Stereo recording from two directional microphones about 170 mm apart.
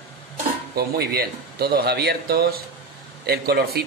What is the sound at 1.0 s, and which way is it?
A man's voice, 65° right (ahead or behind).